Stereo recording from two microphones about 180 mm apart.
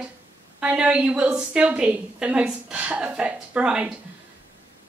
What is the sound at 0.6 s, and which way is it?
A woman's voice, 5° right (ahead or behind).